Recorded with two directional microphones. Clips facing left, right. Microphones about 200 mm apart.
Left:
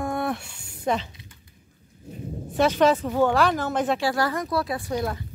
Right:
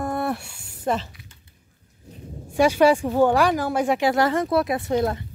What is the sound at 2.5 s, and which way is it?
Speech, 10° right (ahead or behind).